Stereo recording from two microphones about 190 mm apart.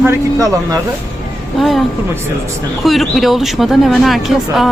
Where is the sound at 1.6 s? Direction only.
Centre (ahead or behind).